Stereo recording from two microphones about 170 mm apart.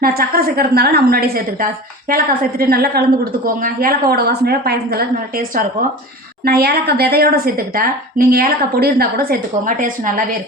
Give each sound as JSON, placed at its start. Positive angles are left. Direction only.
{"t": 0.0, "sound": "a woman's voice", "side_deg": -65}